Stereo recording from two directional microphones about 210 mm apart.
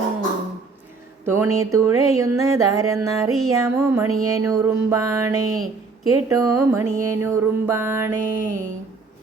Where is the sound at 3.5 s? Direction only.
15° right (ahead or behind).